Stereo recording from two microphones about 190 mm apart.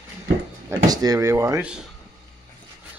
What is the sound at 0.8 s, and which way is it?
Speech, 20° right (ahead or behind).